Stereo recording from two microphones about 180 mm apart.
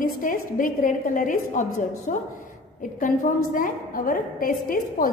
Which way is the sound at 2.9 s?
45° left (ahead or behind).